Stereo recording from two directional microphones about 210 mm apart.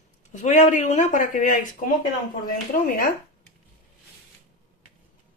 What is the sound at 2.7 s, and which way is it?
Speech, 40° left (ahead or behind).